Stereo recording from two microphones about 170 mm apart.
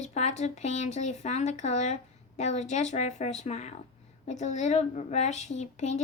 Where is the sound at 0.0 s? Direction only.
40° left (ahead or behind).